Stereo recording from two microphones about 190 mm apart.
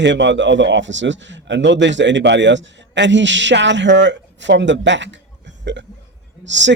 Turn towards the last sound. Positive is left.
turn(degrees=-70)  # may be behind; listen again after turning